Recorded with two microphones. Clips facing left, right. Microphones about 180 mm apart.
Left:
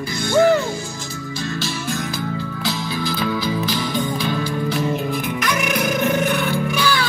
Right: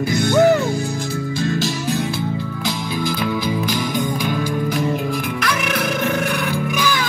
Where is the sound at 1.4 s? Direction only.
45° right (ahead or behind).